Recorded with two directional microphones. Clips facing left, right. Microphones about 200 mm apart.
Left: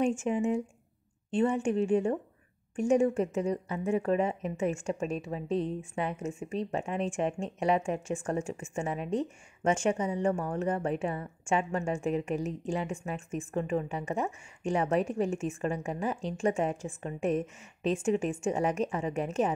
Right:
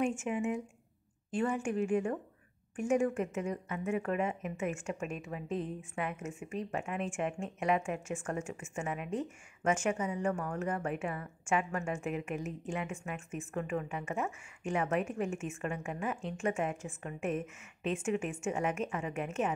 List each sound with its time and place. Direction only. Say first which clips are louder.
0.2 s speech: left 5 dB; 30° left (ahead or behind)